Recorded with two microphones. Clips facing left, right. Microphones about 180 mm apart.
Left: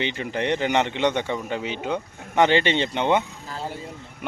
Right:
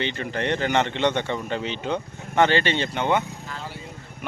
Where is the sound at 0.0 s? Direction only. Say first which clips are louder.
Left 1 dB; 15° left (ahead or behind).